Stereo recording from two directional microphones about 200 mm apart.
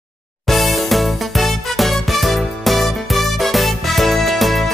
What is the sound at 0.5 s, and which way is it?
Music, centre (ahead or behind).